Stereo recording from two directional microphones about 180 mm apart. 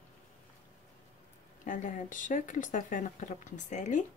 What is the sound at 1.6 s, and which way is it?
A woman's voice, 45° left (ahead or behind).